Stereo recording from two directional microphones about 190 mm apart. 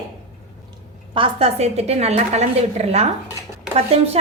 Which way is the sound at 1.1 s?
30° right (ahead or behind).